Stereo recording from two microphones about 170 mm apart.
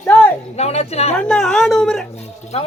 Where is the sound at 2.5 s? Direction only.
40° left (ahead or behind).